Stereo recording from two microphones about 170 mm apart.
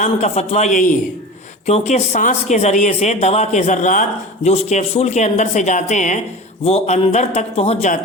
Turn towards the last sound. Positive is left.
turn(degrees=40)  # may be behind; listen again after turning